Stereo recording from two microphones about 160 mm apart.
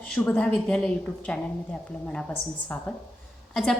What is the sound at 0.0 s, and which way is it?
A woman's voice, 10° left (ahead or behind).